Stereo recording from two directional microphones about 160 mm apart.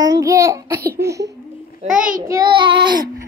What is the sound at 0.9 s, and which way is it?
Speech, 20° right (ahead or behind).